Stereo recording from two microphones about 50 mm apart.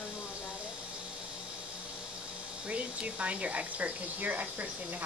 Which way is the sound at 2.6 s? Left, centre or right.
Right.